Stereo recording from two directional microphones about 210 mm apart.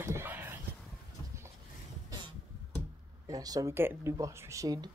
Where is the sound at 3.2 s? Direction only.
15° right (ahead or behind).